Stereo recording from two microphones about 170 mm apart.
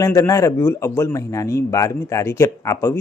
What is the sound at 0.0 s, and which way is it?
Speech, 20° left (ahead or behind).